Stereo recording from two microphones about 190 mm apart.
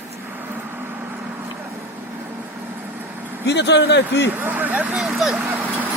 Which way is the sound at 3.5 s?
65° left (ahead or behind).